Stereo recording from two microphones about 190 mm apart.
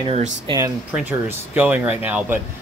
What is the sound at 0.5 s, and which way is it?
Speech, 30° right (ahead or behind).